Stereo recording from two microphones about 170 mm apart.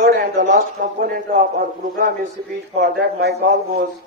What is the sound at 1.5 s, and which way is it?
Speech, 55° right (ahead or behind).